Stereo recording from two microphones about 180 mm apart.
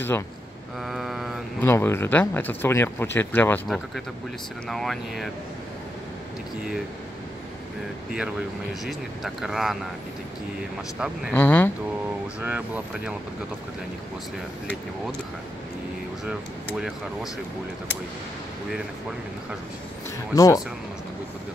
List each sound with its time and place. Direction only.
0.8 s mantra: centre (ahead or behind)
1.6 s speech: 15° left (ahead or behind)
3.6 s speech: centre (ahead or behind)
8.8 s speech: centre (ahead or behind)
11.3 s speech: 10° left (ahead or behind)
12.4 s speech: 10° right (ahead or behind)
20.3 s speech: 20° left (ahead or behind)